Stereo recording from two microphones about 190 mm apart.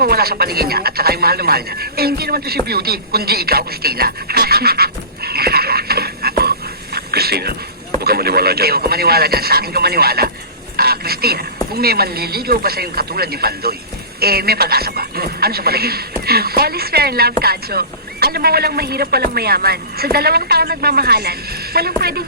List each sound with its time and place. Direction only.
0.0 s speech: 55° right (ahead or behind)
6.9 s a sound: 55° right (ahead or behind)
8.0 s a woman's voice: 55° right (ahead or behind)